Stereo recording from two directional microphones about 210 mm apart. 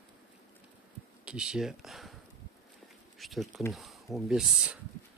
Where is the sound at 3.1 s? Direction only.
Centre (ahead or behind).